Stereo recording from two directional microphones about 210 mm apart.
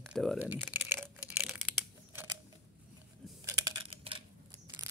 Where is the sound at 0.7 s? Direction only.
10° right (ahead or behind).